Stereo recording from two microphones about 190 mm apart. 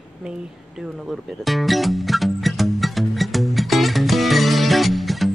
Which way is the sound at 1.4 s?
Centre (ahead or behind).